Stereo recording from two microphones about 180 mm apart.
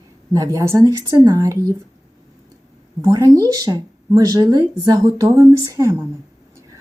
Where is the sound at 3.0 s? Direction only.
20° right (ahead or behind).